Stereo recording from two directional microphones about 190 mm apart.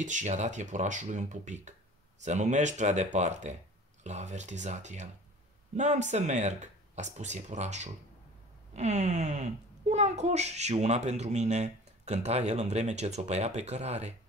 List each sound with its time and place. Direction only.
0.0 s a child's voice: 40° right (ahead or behind)